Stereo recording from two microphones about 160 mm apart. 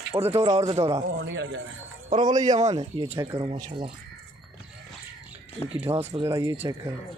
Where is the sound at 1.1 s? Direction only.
90° right.